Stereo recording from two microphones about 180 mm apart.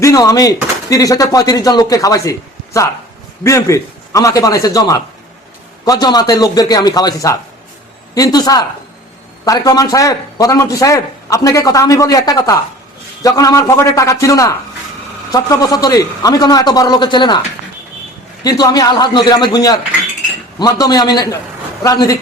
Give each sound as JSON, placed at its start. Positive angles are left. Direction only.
{"t": 0.0, "sound": "a man's voice", "side_deg": 20}
{"t": 3.4, "sound": "a man's voice", "side_deg": 15}
{"t": 18.4, "sound": "a man's voice", "side_deg": 20}